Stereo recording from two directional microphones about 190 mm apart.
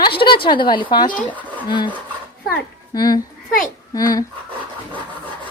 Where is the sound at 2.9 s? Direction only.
20° left (ahead or behind).